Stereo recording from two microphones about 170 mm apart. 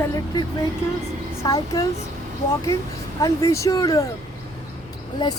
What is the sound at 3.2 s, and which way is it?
Speech, 20° left (ahead or behind).